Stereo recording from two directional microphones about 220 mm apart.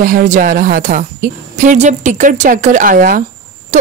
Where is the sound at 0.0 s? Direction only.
35° right (ahead or behind).